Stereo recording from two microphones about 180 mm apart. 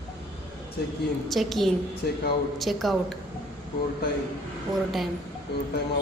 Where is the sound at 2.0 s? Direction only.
60° left (ahead or behind).